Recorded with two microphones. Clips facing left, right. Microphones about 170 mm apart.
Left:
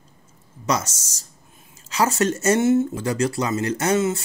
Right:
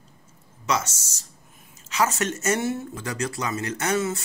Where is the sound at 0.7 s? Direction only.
40° left (ahead or behind).